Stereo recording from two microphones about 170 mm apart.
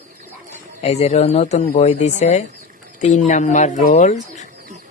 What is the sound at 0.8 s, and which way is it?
Speech, 40° left (ahead or behind).